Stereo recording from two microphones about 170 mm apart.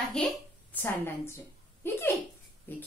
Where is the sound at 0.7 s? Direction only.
10° left (ahead or behind).